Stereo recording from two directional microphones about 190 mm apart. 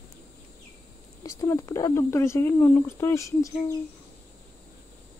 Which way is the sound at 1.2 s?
15° left (ahead or behind).